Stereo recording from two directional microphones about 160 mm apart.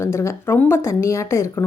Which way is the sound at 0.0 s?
15° left (ahead or behind).